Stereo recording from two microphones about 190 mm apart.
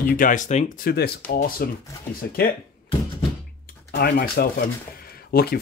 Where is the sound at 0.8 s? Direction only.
55° left (ahead or behind).